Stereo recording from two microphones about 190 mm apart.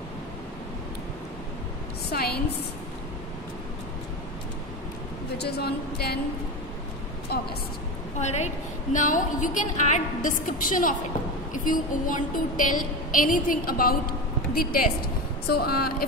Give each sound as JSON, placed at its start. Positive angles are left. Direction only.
{"t": 2.0, "sound": "a woman's voice", "side_deg": 55}
{"t": 5.4, "sound": "speech", "side_deg": 55}
{"t": 8.2, "sound": "a woman's voice", "side_deg": 35}
{"t": 8.9, "sound": "a sound", "side_deg": 45}
{"t": 15.4, "sound": "speech", "side_deg": 55}